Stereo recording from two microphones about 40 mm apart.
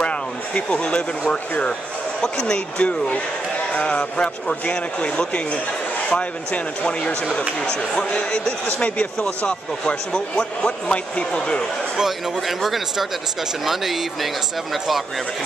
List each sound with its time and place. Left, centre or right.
0.7 s speech: left
2.2 s speech: left
8.6 s speech: left
9.5 s speech: left
12.0 s speech: centre